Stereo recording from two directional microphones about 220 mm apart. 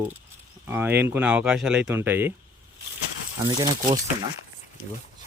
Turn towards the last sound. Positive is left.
turn(degrees=-20)  # may be behind; listen again after turning